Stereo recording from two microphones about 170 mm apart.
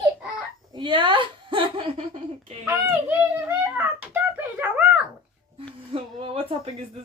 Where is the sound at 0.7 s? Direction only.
25° right (ahead or behind).